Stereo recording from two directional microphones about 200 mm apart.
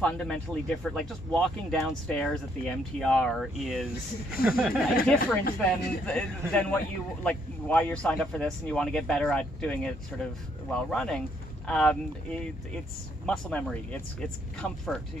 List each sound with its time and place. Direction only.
0.0 s speech: 5° left (ahead or behind)
5.4 s speech: 50° left (ahead or behind)
6.0 s a man's voice: 5° left (ahead or behind)